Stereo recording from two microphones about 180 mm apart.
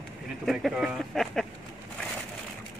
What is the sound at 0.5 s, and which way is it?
Speech, centre (ahead or behind).